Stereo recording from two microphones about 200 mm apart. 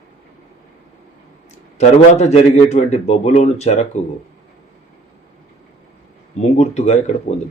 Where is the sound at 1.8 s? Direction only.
35° left (ahead or behind).